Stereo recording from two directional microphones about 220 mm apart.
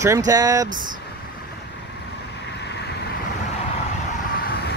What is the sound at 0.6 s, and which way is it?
Speech, 35° right (ahead or behind).